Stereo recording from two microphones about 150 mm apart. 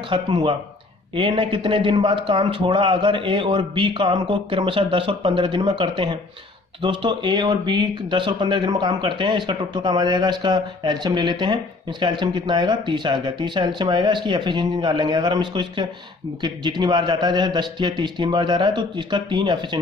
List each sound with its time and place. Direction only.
0.1 s speech: 35° right (ahead or behind)